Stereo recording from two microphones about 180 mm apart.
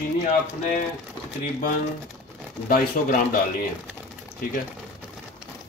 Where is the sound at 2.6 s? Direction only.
50° left (ahead or behind).